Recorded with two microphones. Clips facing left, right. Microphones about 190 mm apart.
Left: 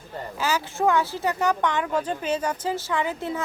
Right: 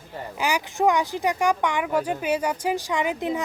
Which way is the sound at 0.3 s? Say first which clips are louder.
Right 1 dB; 15° right (ahead or behind).